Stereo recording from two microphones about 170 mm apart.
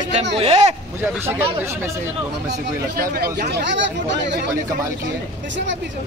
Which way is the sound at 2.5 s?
65° right (ahead or behind).